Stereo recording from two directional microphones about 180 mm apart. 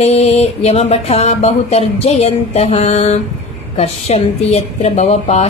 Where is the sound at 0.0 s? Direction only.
35° left (ahead or behind).